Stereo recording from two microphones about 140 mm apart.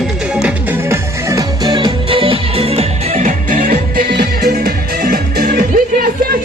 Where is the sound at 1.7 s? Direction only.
35° right (ahead or behind); by 6.1 s 90° right.